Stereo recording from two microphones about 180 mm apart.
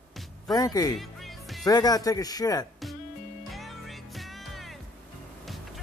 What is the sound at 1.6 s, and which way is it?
Speech, 20° left (ahead or behind).